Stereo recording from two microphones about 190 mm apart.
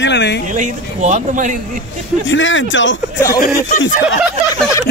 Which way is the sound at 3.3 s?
45° left (ahead or behind).